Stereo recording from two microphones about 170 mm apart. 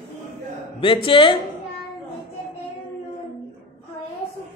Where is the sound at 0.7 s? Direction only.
30° left (ahead or behind).